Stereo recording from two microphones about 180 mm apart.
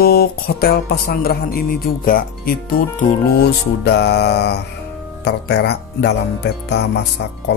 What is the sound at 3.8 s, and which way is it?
Speech, 70° left (ahead or behind).